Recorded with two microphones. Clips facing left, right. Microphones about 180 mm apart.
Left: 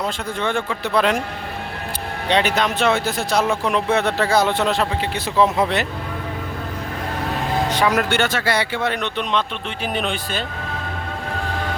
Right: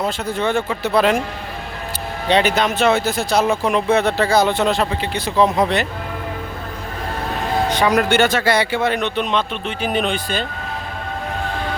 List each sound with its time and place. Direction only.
0.0 s speech: 5° right (ahead or behind)
2.3 s speech: centre (ahead or behind)
7.8 s speech: 5° left (ahead or behind)
8.2 s speech: 20° right (ahead or behind)
8.7 s speech: 5° right (ahead or behind)